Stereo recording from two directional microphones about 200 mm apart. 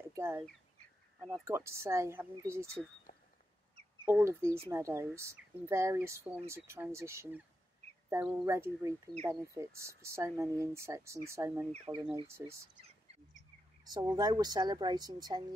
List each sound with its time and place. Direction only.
0.1 s speech: 15° right (ahead or behind)
4.0 s speech: 10° right (ahead or behind)
11.7 s speech: 25° right (ahead or behind)
12.2 s speech: 15° right (ahead or behind)
13.8 s speech: 20° right (ahead or behind)